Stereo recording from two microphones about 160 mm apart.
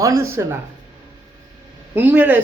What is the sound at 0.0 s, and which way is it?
Speech, 20° right (ahead or behind).